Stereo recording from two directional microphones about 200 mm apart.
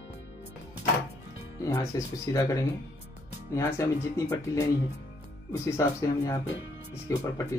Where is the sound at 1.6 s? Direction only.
15° left (ahead or behind).